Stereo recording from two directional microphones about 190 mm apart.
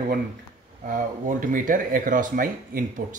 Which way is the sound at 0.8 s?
45° right (ahead or behind).